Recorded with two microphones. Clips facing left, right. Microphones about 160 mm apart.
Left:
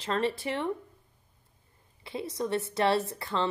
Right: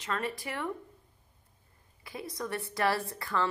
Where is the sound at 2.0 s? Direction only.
25° left (ahead or behind).